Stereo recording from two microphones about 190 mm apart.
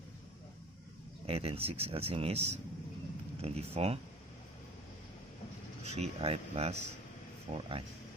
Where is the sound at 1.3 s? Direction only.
30° right (ahead or behind).